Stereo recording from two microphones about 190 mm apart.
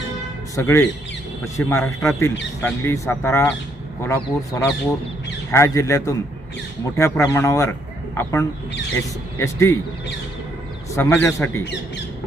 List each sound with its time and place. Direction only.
0.5 s a man's voice: 15° left (ahead or behind)
10.9 s speech: 15° left (ahead or behind)